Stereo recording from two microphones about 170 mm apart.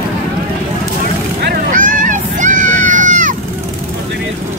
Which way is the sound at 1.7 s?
50° right (ahead or behind).